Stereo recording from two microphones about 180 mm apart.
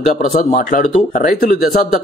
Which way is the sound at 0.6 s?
50° left (ahead or behind).